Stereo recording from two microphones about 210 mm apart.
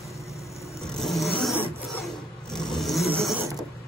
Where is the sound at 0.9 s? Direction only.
Centre (ahead or behind).